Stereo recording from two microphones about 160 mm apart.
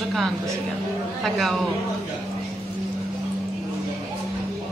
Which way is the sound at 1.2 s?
Centre (ahead or behind).